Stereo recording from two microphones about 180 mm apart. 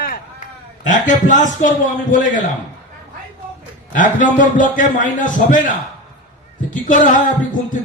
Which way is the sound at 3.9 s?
45° left (ahead or behind).